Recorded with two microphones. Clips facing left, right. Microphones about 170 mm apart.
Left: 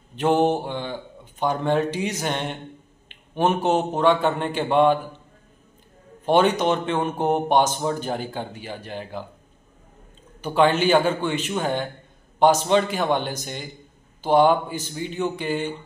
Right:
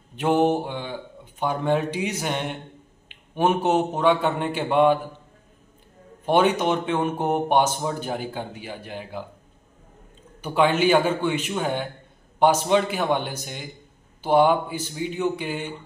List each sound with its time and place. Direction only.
0.1 s speech: 10° right (ahead or behind)
3.6 s speech: 10° right (ahead or behind)
6.2 s speech: 10° right (ahead or behind)
10.4 s speech: 10° right (ahead or behind)